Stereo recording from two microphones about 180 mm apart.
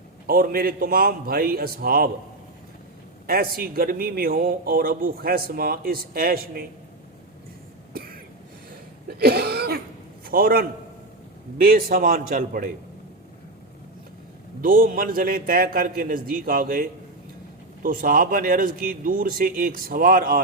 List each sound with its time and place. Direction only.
0.3 s a man's voice: 55° right (ahead or behind)
3.2 s a man's voice: 55° right (ahead or behind)
7.9 s throat clearing: 55° right (ahead or behind)
9.0 s cough: 60° right (ahead or behind)
10.2 s speech: 55° right (ahead or behind)
14.6 s speech: 50° right (ahead or behind)